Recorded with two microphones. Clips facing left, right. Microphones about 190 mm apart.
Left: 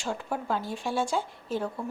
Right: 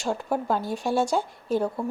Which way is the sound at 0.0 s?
40° right (ahead or behind).